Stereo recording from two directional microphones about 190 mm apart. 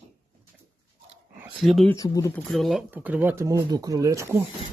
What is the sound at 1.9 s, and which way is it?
Speech, 20° left (ahead or behind).